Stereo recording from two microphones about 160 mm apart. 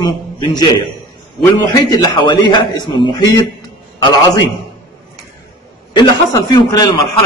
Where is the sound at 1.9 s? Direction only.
25° left (ahead or behind).